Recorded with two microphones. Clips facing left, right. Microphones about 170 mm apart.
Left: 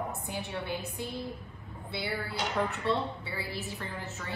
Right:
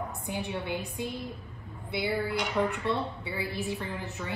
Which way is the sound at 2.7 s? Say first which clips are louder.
Even; 15° right (ahead or behind).